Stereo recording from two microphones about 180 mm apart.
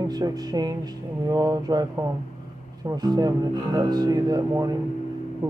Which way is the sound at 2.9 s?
20° right (ahead or behind).